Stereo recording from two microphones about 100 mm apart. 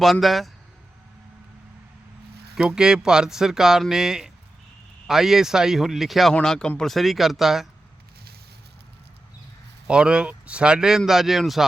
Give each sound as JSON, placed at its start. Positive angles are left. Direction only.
{"t": 0.0, "sound": "speech", "side_deg": 0}
{"t": 2.6, "sound": "speech", "side_deg": -5}
{"t": 9.8, "sound": "speech", "side_deg": -10}